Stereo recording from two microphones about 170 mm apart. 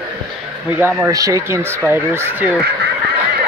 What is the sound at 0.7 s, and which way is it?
Speech, 10° right (ahead or behind).